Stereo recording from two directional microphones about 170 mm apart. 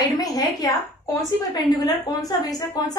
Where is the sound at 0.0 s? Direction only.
25° left (ahead or behind).